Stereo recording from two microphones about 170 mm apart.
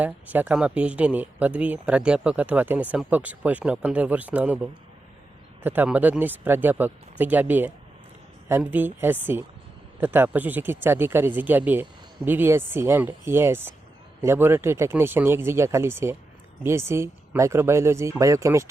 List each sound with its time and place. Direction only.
0.0 s speech: 10° right (ahead or behind)